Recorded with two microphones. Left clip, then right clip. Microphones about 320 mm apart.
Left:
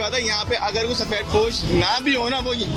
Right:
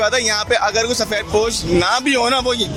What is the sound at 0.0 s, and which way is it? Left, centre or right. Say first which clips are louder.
A man's voice: right 6 dB; right.